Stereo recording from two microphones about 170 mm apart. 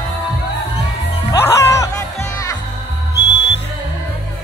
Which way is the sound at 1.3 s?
15° left (ahead or behind).